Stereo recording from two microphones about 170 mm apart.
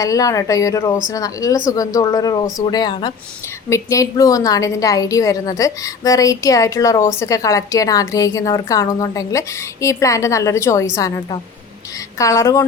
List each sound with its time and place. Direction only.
0.0 s a woman's voice: 20° left (ahead or behind)